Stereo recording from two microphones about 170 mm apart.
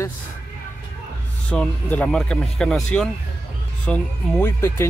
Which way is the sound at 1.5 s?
10° left (ahead or behind).